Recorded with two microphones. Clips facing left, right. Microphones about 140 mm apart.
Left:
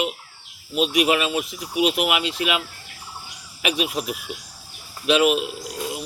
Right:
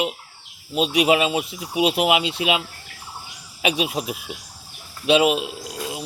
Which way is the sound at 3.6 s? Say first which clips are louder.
Right 1 dB; 30° right (ahead or behind).